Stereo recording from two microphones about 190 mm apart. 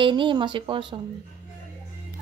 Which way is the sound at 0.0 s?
25° right (ahead or behind).